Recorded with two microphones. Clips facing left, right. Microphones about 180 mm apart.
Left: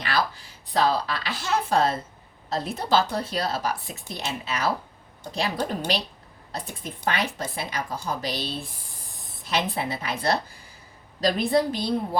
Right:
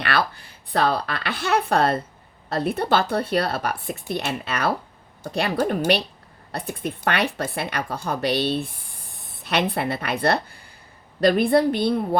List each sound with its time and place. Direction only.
0.0 s a woman's voice: 60° right (ahead or behind)